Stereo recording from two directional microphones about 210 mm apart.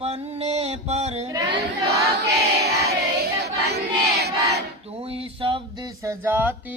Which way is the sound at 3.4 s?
50° right (ahead or behind).